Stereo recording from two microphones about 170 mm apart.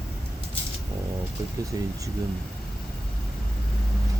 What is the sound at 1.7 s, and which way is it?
Speech, 20° right (ahead or behind).